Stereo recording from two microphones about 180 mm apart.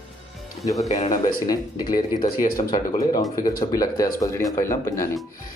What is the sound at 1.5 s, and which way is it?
Speech, 20° left (ahead or behind).